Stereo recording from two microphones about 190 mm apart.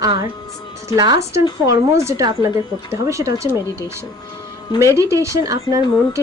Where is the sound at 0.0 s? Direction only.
20° right (ahead or behind).